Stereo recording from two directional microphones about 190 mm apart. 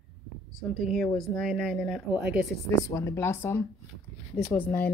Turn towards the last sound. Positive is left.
turn(degrees=10)  # may be behind; listen again after turning